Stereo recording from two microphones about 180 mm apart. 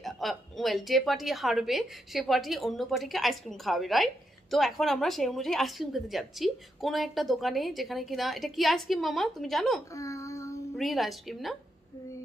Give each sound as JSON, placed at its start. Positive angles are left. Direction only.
{"t": 0.0, "sound": "a woman's voice", "side_deg": 0}
{"t": 9.9, "sound": "a sound", "side_deg": 15}
{"t": 10.8, "sound": "a woman's voice", "side_deg": 0}